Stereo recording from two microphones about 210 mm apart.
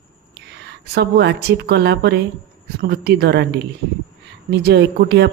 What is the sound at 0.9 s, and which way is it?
Speech, 55° right (ahead or behind).